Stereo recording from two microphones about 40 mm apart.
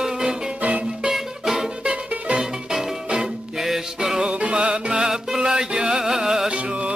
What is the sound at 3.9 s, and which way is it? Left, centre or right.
Music, centre.